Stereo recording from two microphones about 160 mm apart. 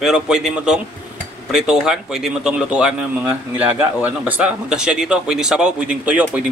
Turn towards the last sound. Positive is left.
turn(degrees=-10)  # may be behind; listen again after turning